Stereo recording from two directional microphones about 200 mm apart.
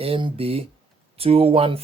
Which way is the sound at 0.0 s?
25° right (ahead or behind).